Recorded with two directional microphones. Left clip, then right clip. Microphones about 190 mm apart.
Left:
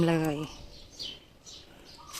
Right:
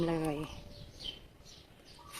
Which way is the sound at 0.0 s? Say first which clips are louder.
Left 6 dB; 25° left (ahead or behind).